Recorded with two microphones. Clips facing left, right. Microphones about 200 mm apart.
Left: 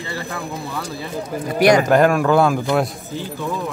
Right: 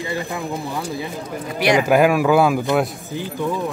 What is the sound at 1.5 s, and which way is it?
Speech, 45° left (ahead or behind).